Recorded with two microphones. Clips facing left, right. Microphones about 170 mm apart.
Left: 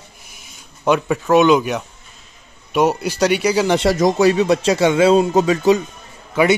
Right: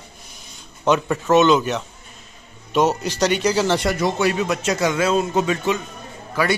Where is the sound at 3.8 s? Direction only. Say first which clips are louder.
Left 6 dB; 40° left (ahead or behind).